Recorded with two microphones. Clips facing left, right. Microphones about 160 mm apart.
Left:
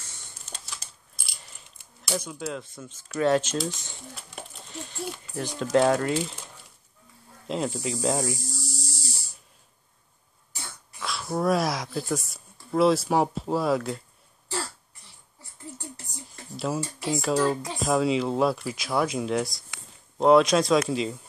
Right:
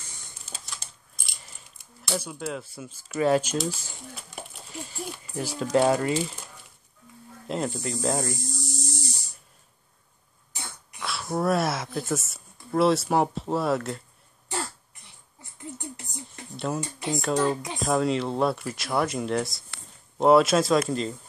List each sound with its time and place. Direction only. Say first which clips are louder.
0.5 s typing: even; centre (ahead or behind)
2.4 s speech: even; 5° right (ahead or behind)
7.4 s speech: left 1 dB; centre (ahead or behind)
8.5 s hum: right 3 dB; 20° right (ahead or behind)
11.0 s speech: even; centre (ahead or behind)
16.5 s speech: left 1 dB; centre (ahead or behind)